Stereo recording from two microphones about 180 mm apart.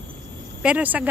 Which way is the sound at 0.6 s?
10° right (ahead or behind).